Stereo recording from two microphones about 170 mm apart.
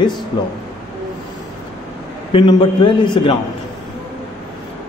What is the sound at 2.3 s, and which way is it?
Speech, 30° left (ahead or behind).